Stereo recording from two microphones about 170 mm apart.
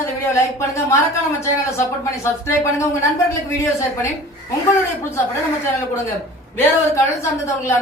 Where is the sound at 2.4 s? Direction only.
15° left (ahead or behind).